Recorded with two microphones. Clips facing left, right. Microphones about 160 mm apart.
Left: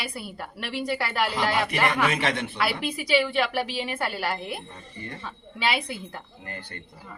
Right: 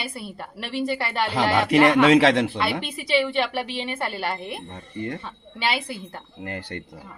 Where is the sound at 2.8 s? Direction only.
30° right (ahead or behind).